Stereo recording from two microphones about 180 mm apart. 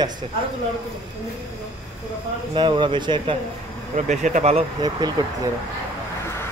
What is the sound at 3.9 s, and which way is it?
Speech, 40° right (ahead or behind).